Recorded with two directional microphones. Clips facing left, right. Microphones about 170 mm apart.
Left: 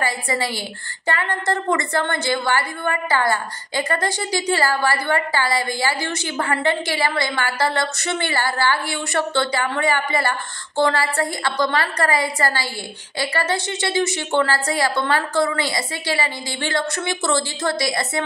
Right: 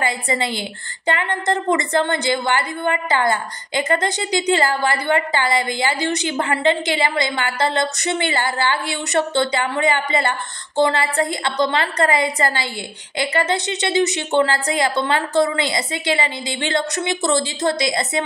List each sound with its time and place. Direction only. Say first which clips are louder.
1.0 s a woman's voice: right 2 dB; 20° right (ahead or behind)